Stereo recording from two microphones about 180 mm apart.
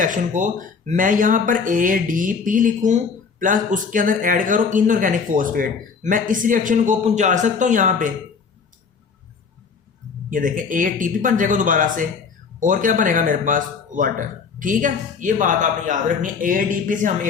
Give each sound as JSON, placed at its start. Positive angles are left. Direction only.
{"t": 0.0, "sound": "speech", "side_deg": -45}
{"t": 10.2, "sound": "speech", "side_deg": -50}